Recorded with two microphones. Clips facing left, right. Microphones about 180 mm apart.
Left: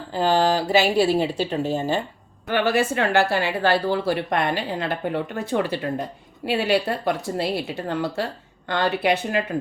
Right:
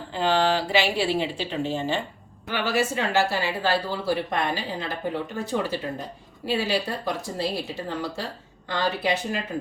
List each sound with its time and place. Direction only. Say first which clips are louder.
0.1 s speech: left 3 dB; 40° left (ahead or behind)
2.5 s a woman's voice: left 4 dB; 55° left (ahead or behind)